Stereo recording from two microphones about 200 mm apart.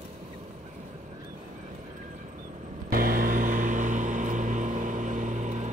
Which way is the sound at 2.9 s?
45° right (ahead or behind).